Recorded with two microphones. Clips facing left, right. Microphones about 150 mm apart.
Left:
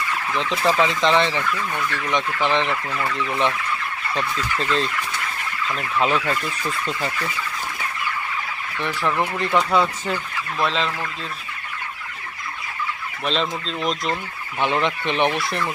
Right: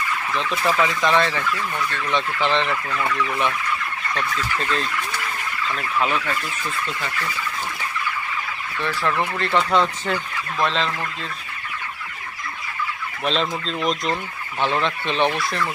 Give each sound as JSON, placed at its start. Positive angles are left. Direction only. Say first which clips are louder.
{"t": 0.3, "sound": "speech", "louder": "left 2 dB", "side_deg": 20}
{"t": 3.2, "sound": "speech", "louder": "left 3 dB", "side_deg": 25}
{"t": 6.0, "sound": "speech", "louder": "left 3 dB", "side_deg": 30}
{"t": 8.8, "sound": "speech", "louder": "even", "side_deg": 15}
{"t": 13.2, "sound": "speech", "louder": "right 1 dB", "side_deg": 0}
{"t": 14.6, "sound": "speech", "louder": "left 1 dB", "side_deg": 15}